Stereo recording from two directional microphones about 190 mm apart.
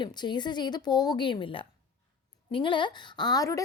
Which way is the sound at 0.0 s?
25° left (ahead or behind).